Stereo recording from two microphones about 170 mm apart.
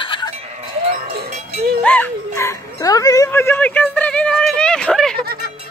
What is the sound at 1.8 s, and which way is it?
Music, 10° left (ahead or behind).